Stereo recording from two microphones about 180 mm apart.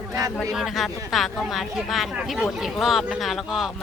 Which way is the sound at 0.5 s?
Centre (ahead or behind).